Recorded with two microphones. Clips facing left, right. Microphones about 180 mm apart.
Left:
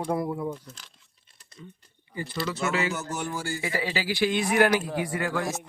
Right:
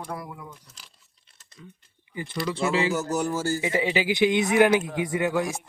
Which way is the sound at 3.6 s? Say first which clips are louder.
Right 3 dB; 20° right (ahead or behind).